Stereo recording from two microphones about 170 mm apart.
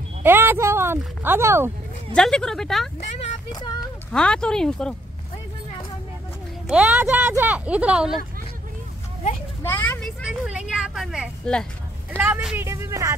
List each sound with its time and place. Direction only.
0.2 s speech: 10° right (ahead or behind)
2.1 s speech: 5° left (ahead or behind)
3.5 s speech: 25° left (ahead or behind)
4.1 s speech: 5° left (ahead or behind)
6.7 s speech: 10° right (ahead or behind)
9.6 s vehicle: 10° left (ahead or behind)
12.2 s speech: 5° right (ahead or behind)
12.6 s speech: 15° right (ahead or behind)